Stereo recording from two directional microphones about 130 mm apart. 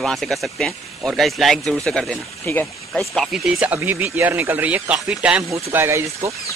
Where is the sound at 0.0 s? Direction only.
Centre (ahead or behind).